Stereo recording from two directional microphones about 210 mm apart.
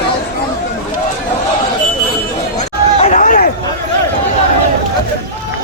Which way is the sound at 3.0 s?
35° left (ahead or behind).